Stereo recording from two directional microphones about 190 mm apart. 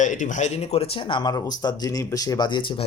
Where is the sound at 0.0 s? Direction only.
40° left (ahead or behind).